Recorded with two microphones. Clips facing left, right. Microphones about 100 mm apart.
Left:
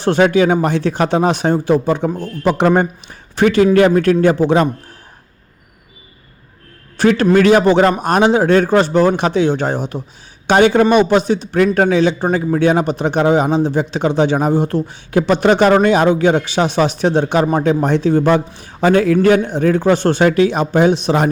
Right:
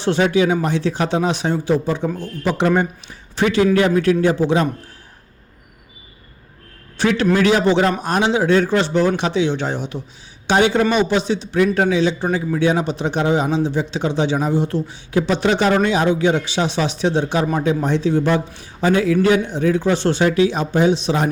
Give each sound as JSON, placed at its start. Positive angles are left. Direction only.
{"t": 0.0, "sound": "a man's voice", "side_deg": 55}
{"t": 6.9, "sound": "a man's voice", "side_deg": 50}